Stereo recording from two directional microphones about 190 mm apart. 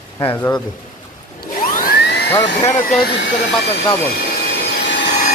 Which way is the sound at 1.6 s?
45° left (ahead or behind).